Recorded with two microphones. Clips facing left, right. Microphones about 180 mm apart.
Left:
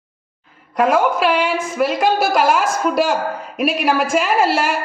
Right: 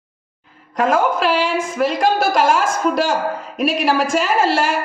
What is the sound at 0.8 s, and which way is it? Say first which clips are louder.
A woman's voice: left 1 dB; 5° left (ahead or behind).